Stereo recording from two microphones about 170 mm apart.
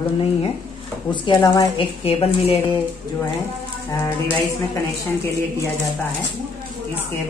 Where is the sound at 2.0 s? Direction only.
35° left (ahead or behind).